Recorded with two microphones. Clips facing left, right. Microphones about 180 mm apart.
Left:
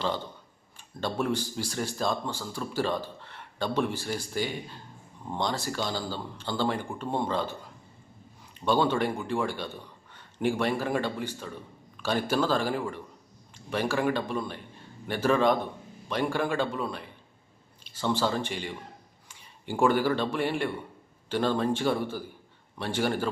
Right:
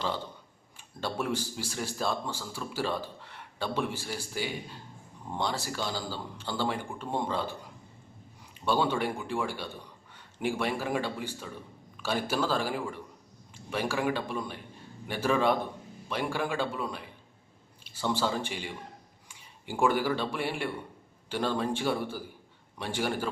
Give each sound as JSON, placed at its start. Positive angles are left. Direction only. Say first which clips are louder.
{"t": 1.0, "sound": "speech", "louder": "left 3 dB", "side_deg": -10}
{"t": 8.6, "sound": "speech", "louder": "left 3 dB", "side_deg": -10}
{"t": 19.8, "sound": "speech", "louder": "left 3 dB", "side_deg": -10}